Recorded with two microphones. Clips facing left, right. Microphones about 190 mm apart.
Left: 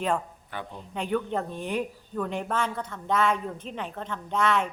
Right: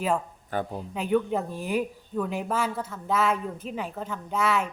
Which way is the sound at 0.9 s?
5° right (ahead or behind).